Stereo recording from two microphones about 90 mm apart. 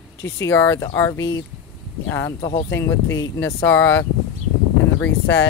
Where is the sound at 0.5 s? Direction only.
20° left (ahead or behind).